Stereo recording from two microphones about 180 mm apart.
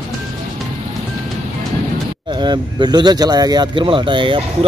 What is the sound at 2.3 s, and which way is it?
Speech, 25° right (ahead or behind).